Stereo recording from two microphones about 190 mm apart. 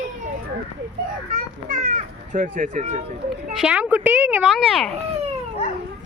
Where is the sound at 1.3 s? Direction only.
40° right (ahead or behind).